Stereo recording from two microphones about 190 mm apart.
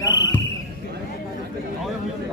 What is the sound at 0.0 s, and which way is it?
Basketball bounce, 15° left (ahead or behind).